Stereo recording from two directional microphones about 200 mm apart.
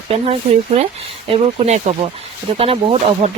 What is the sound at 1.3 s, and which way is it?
Speech, 30° right (ahead or behind).